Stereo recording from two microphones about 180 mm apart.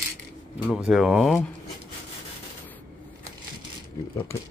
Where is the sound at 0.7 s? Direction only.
5° right (ahead or behind).